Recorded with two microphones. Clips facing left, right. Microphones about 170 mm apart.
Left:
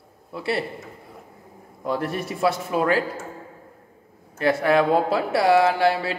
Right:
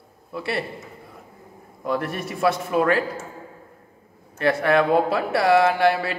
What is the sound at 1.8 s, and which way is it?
Speech, 25° left (ahead or behind).